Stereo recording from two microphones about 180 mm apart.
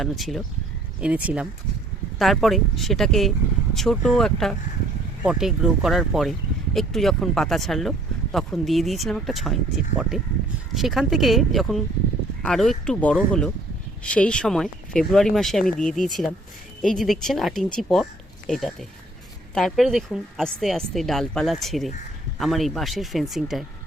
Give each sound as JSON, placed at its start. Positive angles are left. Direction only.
{"t": 0.0, "sound": "speech", "side_deg": 0}